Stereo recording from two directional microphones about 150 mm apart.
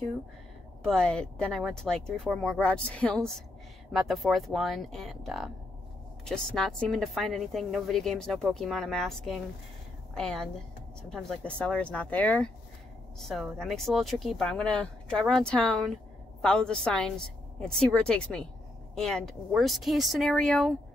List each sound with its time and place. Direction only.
0.8 s a woman's voice: 5° left (ahead or behind)